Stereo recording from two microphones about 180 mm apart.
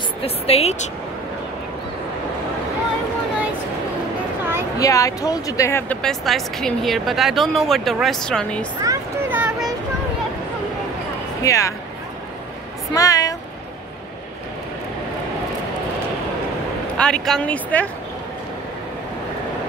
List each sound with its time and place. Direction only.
0.2 s a woman's voice: 35° left (ahead or behind)
4.7 s speech: 20° left (ahead or behind)
8.8 s a sound: 15° right (ahead or behind)
11.4 s speech: 15° left (ahead or behind)
12.9 s a sound: 20° left (ahead or behind)
16.9 s speech: 5° left (ahead or behind)